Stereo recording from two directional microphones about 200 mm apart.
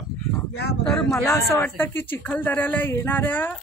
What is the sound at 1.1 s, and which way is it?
A woman's voice, 15° left (ahead or behind).